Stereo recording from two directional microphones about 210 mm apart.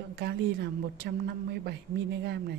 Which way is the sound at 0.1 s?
50° right (ahead or behind).